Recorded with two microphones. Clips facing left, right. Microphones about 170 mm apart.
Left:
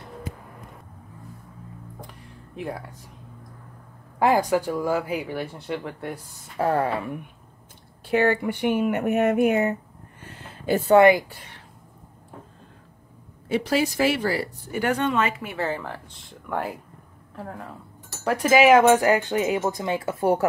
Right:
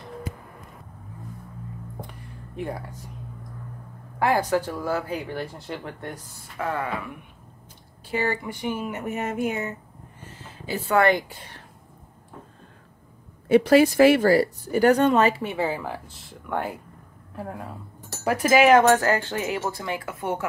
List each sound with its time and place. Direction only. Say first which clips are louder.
2.5 s speech: right 1 dB; centre (ahead or behind)
4.2 s speech: left 2 dB; 15° left (ahead or behind)
6.6 s speech: left 6 dB; 40° left (ahead or behind)
8.1 s speech: left 6 dB; 60° left (ahead or behind)
10.2 s a sound: left 8 dB; 60° left (ahead or behind)
13.5 s speech: right 7 dB; 55° right (ahead or behind); by 15.4 s 35° right (ahead or behind)
15.4 s speech: right 2 dB; 15° right (ahead or behind)
17.4 s speech: right 2 dB; 10° right (ahead or behind); by 20.4 s 35° left (ahead or behind)